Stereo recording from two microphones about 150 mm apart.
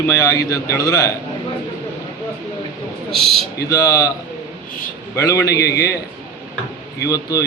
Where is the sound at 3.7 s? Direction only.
25° left (ahead or behind).